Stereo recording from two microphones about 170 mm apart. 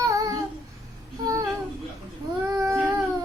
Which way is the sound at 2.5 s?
15° right (ahead or behind).